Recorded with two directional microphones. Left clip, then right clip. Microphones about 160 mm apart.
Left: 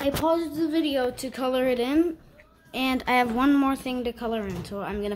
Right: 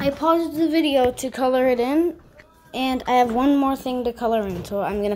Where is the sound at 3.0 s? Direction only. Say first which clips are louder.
Right 5 dB; 15° left (ahead or behind).